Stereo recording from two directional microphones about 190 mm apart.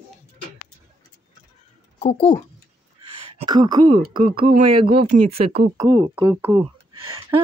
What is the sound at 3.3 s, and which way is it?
Speech, 25° right (ahead or behind).